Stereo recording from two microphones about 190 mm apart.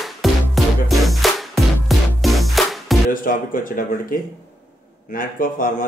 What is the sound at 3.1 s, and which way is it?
A man's voice, 45° left (ahead or behind).